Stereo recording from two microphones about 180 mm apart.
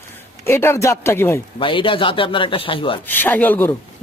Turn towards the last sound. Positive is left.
turn(degrees=10)  # may be behind; listen again after turning